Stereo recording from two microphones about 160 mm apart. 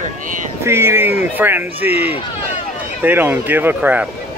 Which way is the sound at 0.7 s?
15° right (ahead or behind).